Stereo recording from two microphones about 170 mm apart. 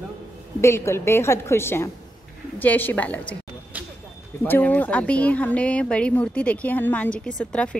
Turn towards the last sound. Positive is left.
turn(degrees=5)  # may be behind; listen again after turning